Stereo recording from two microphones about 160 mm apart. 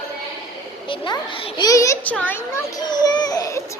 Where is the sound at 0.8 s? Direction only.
30° left (ahead or behind).